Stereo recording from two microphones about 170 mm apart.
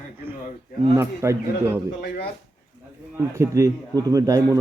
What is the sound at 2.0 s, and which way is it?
Speech, 70° left (ahead or behind).